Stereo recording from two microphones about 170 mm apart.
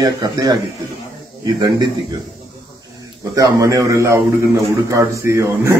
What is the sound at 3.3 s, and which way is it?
Speech, 20° right (ahead or behind).